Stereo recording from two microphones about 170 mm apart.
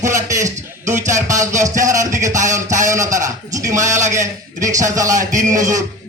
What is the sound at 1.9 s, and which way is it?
A man's voice, 20° right (ahead or behind).